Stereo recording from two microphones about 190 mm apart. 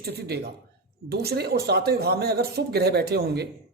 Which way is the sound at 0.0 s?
55° right (ahead or behind).